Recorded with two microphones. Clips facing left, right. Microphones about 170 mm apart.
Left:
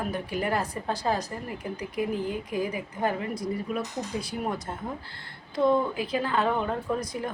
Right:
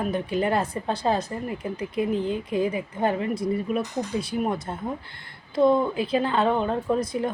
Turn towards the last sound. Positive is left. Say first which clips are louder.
# right 5 dB
turn(degrees=-25)  # may be behind; listen again after turning